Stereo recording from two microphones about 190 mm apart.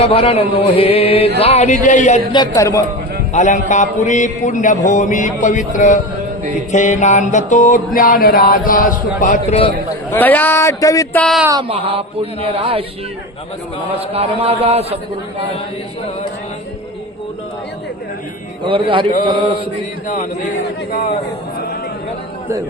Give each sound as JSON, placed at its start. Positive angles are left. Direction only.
{"t": 0.0, "sound": "speech", "side_deg": 30}
{"t": 2.3, "sound": "speech", "side_deg": 20}
{"t": 3.3, "sound": "speech", "side_deg": 40}
{"t": 6.7, "sound": "mantra", "side_deg": 40}
{"t": 10.1, "sound": "speech", "side_deg": 10}
{"t": 11.2, "sound": "speech", "side_deg": 0}
{"t": 11.7, "sound": "speech", "side_deg": -30}
{"t": 14.1, "sound": "a man's voice", "side_deg": -30}
{"t": 18.6, "sound": "speech", "side_deg": -25}